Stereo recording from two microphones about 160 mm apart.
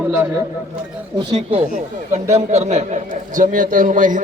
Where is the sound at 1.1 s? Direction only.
35° right (ahead or behind).